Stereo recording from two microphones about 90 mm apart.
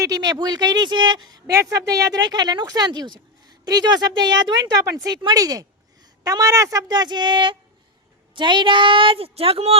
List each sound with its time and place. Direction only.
0.0 s a woman's voice: 45° right (ahead or behind); by 9.6 s 90° right